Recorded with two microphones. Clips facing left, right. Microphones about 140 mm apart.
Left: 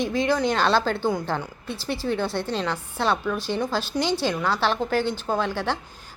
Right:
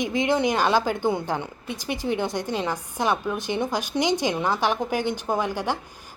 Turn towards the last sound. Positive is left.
turn(degrees=-15)  # may be behind; listen again after turning